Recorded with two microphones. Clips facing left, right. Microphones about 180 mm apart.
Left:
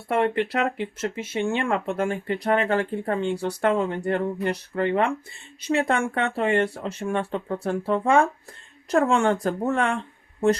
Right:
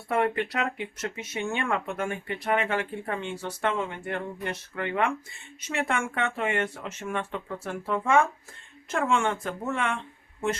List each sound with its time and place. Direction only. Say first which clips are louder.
0.1 s speech: left 4 dB; 25° left (ahead or behind)